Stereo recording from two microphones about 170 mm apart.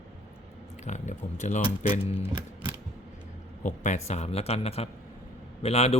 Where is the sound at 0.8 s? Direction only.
45° left (ahead or behind).